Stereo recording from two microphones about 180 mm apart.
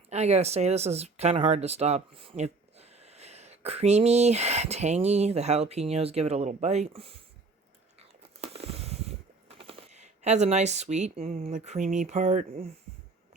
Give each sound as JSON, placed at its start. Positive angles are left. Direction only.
{"t": 0.1, "sound": "speech", "side_deg": -40}
{"t": 8.4, "sound": "a sound", "side_deg": -35}
{"t": 11.4, "sound": "speech", "side_deg": -40}